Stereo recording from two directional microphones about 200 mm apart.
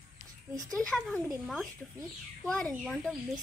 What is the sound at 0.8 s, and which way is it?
Speech, 5° left (ahead or behind).